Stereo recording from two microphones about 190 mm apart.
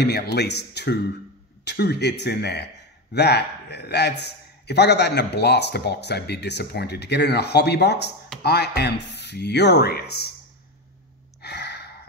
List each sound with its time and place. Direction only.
0.0 s a man's voice: 55° left (ahead or behind)
11.4 s gasp: 60° left (ahead or behind)